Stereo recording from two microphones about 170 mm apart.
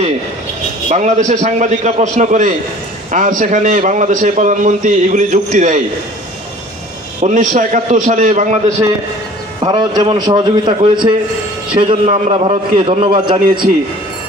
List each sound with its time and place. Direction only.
0.9 s a man's voice: 45° right (ahead or behind)
7.2 s a man's voice: 45° right (ahead or behind)
9.6 s a man's voice: 25° right (ahead or behind)